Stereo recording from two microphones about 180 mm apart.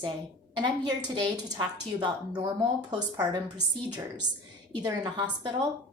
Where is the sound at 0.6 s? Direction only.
25° right (ahead or behind).